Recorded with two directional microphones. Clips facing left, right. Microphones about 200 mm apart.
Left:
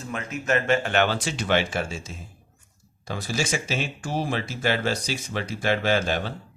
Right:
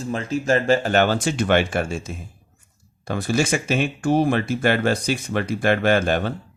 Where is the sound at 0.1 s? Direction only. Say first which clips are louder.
Right 5 dB; 30° right (ahead or behind); by 6.3 s 55° right (ahead or behind).